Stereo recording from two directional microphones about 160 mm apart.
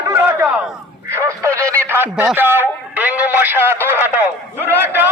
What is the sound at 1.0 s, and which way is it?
Radio, 20° right (ahead or behind).